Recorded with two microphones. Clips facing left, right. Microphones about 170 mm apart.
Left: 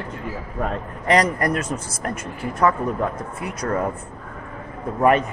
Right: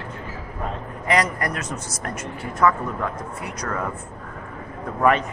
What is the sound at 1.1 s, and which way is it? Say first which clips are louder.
Speech: left 4 dB; 35° left (ahead or behind).